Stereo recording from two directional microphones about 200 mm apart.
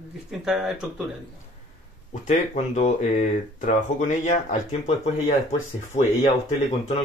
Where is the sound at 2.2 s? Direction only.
35° left (ahead or behind).